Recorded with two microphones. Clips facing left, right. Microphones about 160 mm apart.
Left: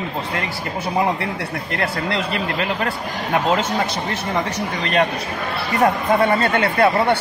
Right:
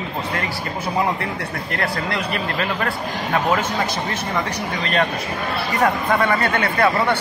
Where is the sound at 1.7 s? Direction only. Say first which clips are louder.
Left 1 dB; 25° left (ahead or behind).